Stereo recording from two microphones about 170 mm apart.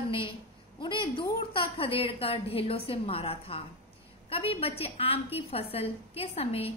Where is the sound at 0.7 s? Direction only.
30° left (ahead or behind).